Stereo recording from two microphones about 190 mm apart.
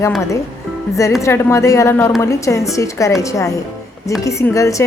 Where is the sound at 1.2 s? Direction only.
15° left (ahead or behind).